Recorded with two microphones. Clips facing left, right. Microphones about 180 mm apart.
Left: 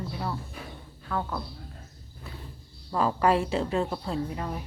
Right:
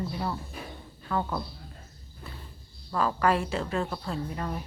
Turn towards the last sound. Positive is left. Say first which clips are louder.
# left 2 dB
turn(degrees=10)  # may be behind; listen again after turning